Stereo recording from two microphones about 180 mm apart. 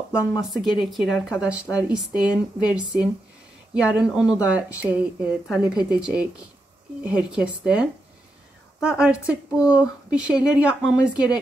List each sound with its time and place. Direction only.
0.2 s speech: 20° left (ahead or behind)
0.5 s a woman's voice: centre (ahead or behind)